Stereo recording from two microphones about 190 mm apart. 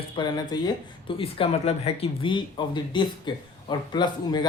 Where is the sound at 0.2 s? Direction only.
20° left (ahead or behind).